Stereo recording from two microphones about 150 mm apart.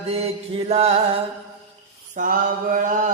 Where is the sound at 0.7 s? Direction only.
45° right (ahead or behind).